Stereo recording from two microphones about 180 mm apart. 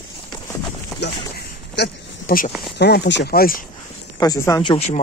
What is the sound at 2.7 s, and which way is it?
Speech, 70° left (ahead or behind).